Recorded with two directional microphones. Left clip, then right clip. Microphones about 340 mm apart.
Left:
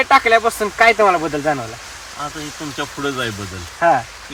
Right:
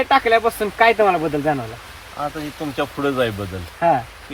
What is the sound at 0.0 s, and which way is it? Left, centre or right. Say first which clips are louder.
Speech: left 3 dB; centre.